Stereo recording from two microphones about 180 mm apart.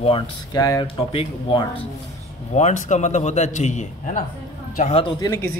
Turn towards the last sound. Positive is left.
turn(degrees=15)  # may be behind; listen again after turning